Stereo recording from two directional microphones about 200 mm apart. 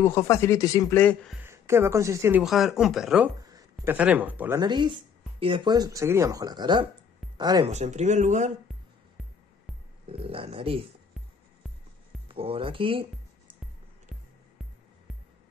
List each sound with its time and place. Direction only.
0.0 s speech: 15° left (ahead or behind)
1.4 s speech: 15° right (ahead or behind)
2.4 s speech: centre (ahead or behind)
3.4 s speech: 15° right (ahead or behind)
4.6 s speech: 25° right (ahead or behind)
7.7 s speech: 35° right (ahead or behind)
10.0 s speech: 30° right (ahead or behind)
12.3 s speech: 25° right (ahead or behind)